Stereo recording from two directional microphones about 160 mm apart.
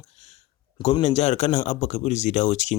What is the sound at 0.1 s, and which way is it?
A man's voice, 40° left (ahead or behind).